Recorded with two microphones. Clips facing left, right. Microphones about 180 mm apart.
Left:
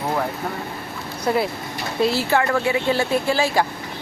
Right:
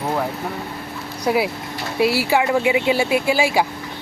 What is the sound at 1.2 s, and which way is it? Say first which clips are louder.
A woman's voice: right 2 dB; 5° right (ahead or behind).